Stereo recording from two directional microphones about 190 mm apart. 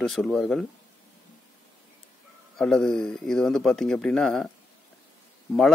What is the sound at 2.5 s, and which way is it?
Speech, 5° left (ahead or behind).